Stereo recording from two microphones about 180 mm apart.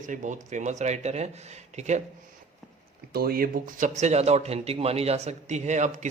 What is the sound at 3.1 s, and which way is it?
A man's voice, 55° right (ahead or behind).